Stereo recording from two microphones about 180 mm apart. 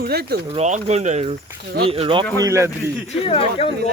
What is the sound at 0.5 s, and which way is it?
Speech, 40° right (ahead or behind).